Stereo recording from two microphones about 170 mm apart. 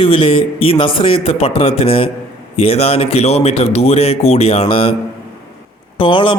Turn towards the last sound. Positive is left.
turn(degrees=30)  # may be behind; listen again after turning